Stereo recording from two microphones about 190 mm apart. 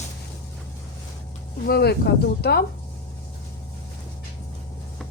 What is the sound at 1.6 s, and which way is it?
Speech, 55° left (ahead or behind).